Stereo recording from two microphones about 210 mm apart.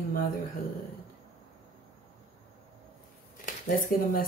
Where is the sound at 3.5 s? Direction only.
40° left (ahead or behind).